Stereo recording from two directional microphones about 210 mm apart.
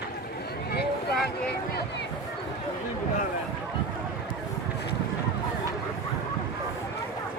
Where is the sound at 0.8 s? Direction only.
50° left (ahead or behind).